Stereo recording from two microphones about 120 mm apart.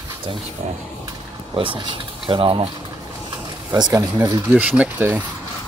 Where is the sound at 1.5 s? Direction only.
40° right (ahead or behind).